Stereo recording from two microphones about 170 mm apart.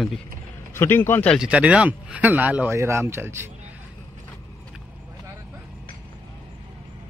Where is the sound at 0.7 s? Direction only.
15° left (ahead or behind).